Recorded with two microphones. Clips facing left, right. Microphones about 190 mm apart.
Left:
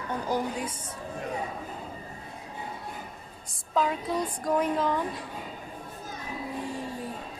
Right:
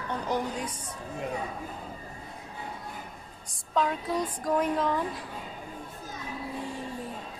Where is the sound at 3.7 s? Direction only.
5° left (ahead or behind).